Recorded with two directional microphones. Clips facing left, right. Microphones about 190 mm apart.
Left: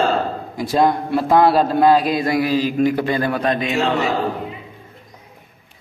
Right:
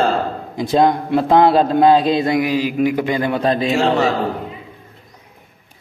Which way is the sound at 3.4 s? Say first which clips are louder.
Right 3 dB; 30° right (ahead or behind).